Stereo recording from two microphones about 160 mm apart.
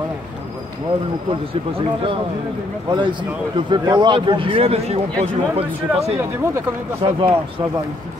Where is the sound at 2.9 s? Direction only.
30° right (ahead or behind).